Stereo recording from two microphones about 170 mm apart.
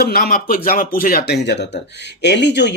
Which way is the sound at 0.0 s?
60° left (ahead or behind).